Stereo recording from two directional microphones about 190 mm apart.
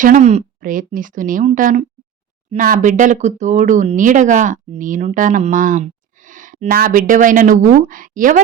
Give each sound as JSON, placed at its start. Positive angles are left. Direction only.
{"t": 0.0, "sound": "speech", "side_deg": -40}